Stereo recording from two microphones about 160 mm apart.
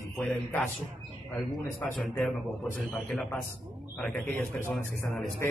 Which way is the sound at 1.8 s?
5° left (ahead or behind).